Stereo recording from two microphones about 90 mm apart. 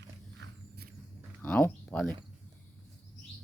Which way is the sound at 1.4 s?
15° left (ahead or behind).